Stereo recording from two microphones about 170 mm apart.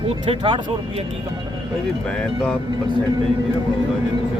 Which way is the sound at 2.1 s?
5° left (ahead or behind).